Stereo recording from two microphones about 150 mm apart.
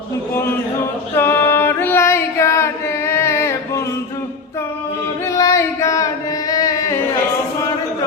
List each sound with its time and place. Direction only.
1.1 s female singing: 15° left (ahead or behind)
5.3 s singing: 20° left (ahead or behind)
6.5 s carnatic music: 25° left (ahead or behind)